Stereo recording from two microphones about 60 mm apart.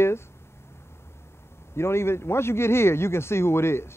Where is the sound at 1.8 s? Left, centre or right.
Left.